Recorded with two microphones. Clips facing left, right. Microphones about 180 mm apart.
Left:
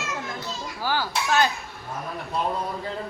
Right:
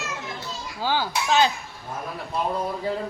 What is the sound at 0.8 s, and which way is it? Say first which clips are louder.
Speech: right 2 dB; 20° right (ahead or behind).